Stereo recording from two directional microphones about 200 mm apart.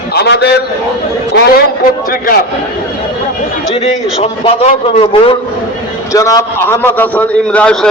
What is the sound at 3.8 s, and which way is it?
A man's voice, 30° left (ahead or behind).